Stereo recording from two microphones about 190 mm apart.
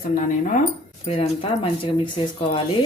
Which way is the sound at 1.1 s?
30° left (ahead or behind).